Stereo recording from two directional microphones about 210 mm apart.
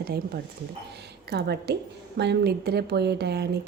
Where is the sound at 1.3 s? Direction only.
50° right (ahead or behind).